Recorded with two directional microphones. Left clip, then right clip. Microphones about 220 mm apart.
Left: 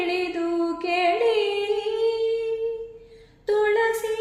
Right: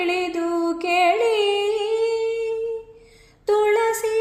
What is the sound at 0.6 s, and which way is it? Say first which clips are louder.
Music: right 5 dB; 25° right (ahead or behind).